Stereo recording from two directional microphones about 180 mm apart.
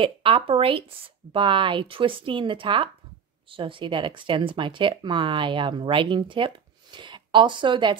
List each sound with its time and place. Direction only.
0.0 s speech: 30° right (ahead or behind)